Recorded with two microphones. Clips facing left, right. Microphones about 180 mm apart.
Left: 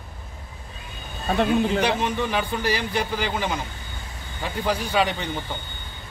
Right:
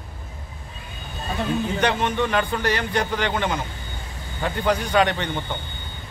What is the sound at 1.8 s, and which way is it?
A man's voice, 5° left (ahead or behind).